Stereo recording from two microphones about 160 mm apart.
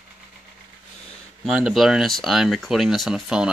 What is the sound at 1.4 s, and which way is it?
Speech, 5° right (ahead or behind).